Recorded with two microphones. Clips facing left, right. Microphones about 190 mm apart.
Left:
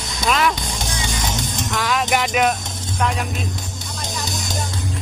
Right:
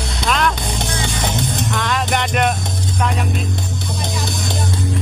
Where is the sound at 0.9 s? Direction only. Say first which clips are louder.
Right 3 dB; 60° right (ahead or behind).